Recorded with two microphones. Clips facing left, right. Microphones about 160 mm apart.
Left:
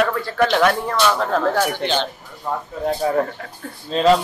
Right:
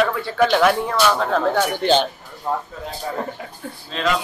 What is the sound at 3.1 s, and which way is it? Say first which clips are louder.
Speech: left 7 dB; 60° left (ahead or behind).